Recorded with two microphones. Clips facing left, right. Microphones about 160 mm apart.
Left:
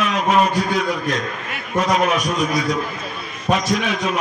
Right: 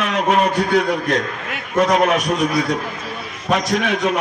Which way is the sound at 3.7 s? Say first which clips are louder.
Right 3 dB; 60° right (ahead or behind).